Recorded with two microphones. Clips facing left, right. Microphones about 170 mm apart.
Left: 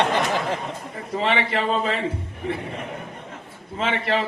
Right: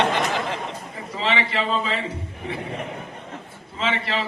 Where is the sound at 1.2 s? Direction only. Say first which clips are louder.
Left 1 dB; 50° left (ahead or behind).